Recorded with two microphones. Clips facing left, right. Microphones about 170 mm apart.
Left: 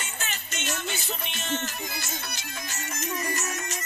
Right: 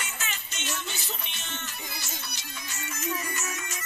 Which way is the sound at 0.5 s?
50° left (ahead or behind).